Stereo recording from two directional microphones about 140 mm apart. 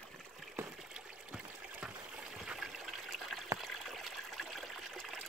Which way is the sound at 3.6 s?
Centre (ahead or behind).